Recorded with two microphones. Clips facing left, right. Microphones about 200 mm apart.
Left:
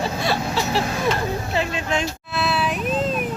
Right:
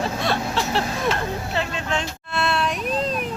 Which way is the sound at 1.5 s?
10° left (ahead or behind).